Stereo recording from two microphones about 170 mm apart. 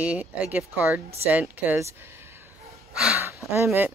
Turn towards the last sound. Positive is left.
turn(degrees=-15)  # may be behind; listen again after turning